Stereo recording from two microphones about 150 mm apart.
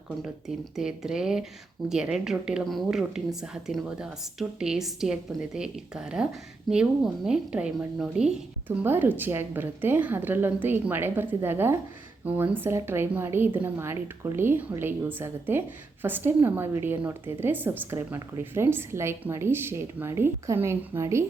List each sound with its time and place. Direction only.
0.2 s a woman's voice: 5° right (ahead or behind); by 21.2 s 20° right (ahead or behind)